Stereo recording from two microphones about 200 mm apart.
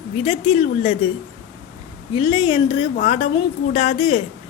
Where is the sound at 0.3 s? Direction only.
30° left (ahead or behind).